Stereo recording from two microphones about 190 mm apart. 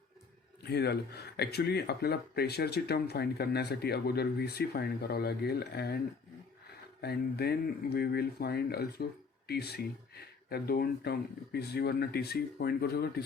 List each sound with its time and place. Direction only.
0.6 s speech: 60° left (ahead or behind)
7.0 s speech: 55° left (ahead or behind)